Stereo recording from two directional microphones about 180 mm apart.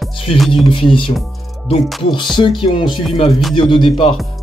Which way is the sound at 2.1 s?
25° left (ahead or behind).